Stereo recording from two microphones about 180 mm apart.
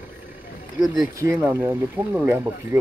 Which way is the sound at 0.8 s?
20° right (ahead or behind).